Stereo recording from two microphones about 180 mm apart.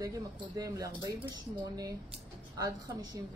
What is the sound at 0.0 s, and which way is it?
A woman's voice, 20° right (ahead or behind).